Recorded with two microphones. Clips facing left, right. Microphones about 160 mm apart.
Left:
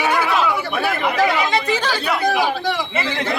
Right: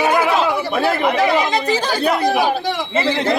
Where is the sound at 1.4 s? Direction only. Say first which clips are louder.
Right 1 dB; 40° right (ahead or behind).